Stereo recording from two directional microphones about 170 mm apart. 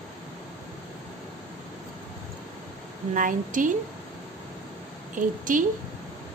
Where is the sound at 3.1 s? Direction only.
50° right (ahead or behind).